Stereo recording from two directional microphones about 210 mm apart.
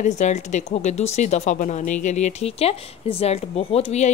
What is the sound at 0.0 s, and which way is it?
Speech, 35° left (ahead or behind).